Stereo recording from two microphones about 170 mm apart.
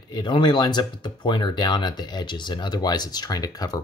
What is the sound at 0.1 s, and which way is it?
Speech, 25° left (ahead or behind).